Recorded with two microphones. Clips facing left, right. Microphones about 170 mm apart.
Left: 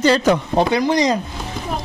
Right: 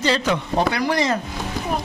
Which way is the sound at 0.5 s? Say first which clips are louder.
Left 4 dB; 20° left (ahead or behind).